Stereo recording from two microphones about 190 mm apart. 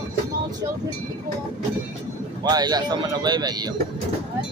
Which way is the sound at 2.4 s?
20° right (ahead or behind).